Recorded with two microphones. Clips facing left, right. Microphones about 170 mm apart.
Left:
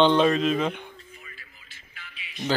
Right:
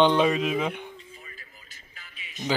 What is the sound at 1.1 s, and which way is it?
Music, 35° right (ahead or behind).